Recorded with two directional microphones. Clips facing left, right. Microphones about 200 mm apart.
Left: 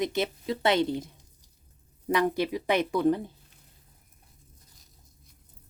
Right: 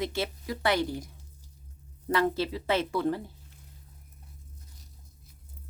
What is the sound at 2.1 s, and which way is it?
Speech, 15° left (ahead or behind).